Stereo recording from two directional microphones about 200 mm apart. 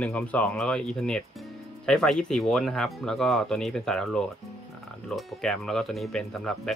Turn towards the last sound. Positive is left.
turn(degrees=0)  # may be behind; listen again after turning